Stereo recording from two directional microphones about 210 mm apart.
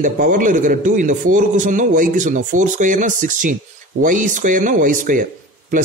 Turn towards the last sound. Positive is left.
turn(degrees=-40)  # may be behind; listen again after turning